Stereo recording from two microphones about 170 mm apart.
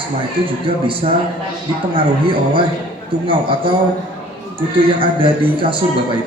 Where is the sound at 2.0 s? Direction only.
30° right (ahead or behind).